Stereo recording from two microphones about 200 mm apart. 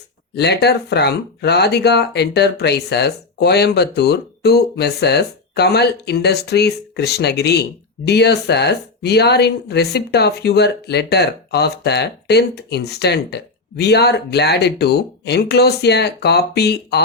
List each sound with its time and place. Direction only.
0.3 s speech: 55° left (ahead or behind)